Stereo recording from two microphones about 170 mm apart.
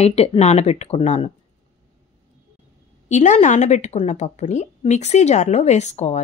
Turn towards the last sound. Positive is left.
turn(degrees=40)  # may be behind; listen again after turning